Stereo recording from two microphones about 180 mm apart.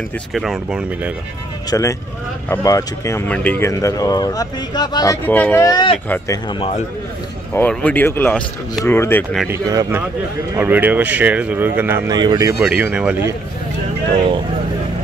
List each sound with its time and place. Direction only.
0.3 s speech: centre (ahead or behind)
1.7 s speech: 20° left (ahead or behind)
5.7 s speech: 25° left (ahead or behind)
6.0 s speech: 10° left (ahead or behind)
7.5 s speech: 10° left (ahead or behind)
9.5 s speech: 15° right (ahead or behind)
12.6 s speech: 5° right (ahead or behind)